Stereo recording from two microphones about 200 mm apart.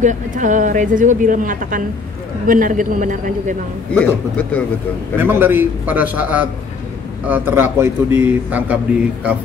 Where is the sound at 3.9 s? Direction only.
5° left (ahead or behind).